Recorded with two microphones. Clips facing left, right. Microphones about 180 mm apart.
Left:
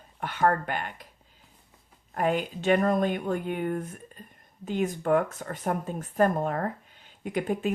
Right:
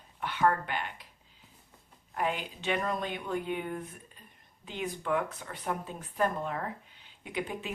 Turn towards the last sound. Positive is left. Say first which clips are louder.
# left 8 dB
turn(degrees=45)  # may be behind; listen again after turning